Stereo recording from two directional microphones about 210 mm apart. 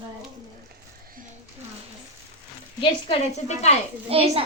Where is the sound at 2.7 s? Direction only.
30° left (ahead or behind).